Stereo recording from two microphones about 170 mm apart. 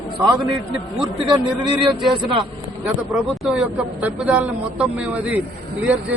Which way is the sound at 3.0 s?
Centre (ahead or behind).